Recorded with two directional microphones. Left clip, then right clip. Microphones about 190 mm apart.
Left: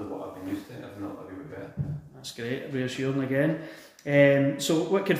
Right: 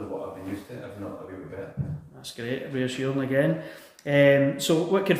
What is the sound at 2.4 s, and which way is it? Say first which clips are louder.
A man's voice: right 2 dB; 5° right (ahead or behind).